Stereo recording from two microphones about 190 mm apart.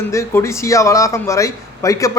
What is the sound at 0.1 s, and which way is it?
Speech, 15° left (ahead or behind).